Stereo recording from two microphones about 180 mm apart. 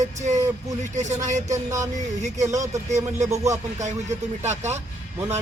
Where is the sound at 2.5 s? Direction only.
20° right (ahead or behind).